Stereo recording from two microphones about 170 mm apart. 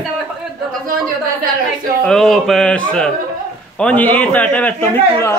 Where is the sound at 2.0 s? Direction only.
Centre (ahead or behind).